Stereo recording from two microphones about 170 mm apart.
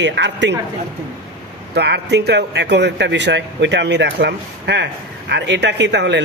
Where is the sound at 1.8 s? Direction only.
80° right.